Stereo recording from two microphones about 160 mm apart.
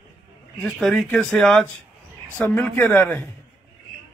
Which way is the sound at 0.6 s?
Centre (ahead or behind).